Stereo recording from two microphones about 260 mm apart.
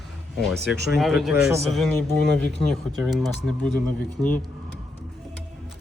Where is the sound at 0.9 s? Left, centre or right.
Centre.